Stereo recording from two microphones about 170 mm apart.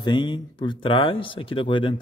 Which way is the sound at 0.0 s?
25° left (ahead or behind).